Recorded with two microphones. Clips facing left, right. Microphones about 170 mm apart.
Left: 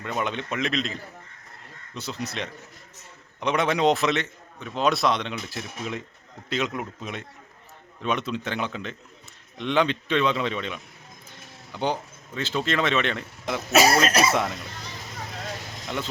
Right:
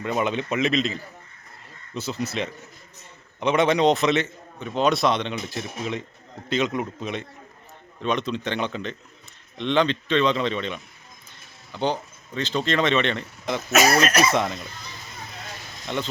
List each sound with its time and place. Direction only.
0.0 s a man's voice: 5° right (ahead or behind)
13.7 s speech: 30° left (ahead or behind)
14.3 s a man's voice: 5° left (ahead or behind)
15.9 s a man's voice: 5° left (ahead or behind)